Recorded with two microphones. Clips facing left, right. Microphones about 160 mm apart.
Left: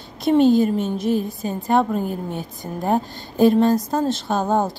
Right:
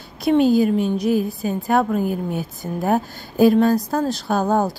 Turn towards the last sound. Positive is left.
turn(degrees=20)  # may be behind; listen again after turning